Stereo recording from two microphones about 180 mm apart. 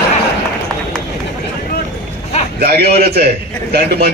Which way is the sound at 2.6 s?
60° right (ahead or behind).